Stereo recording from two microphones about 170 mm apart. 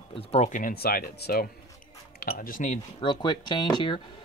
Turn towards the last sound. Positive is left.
turn(degrees=25)  # may be behind; listen again after turning